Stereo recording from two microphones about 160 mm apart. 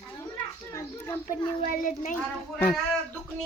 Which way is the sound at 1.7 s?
55° left (ahead or behind).